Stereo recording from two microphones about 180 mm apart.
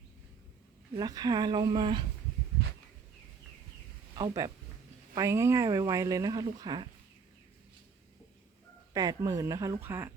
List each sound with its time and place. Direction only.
0.9 s speech: 20° right (ahead or behind)
4.2 s speech: 20° right (ahead or behind)
8.9 s speech: 20° right (ahead or behind)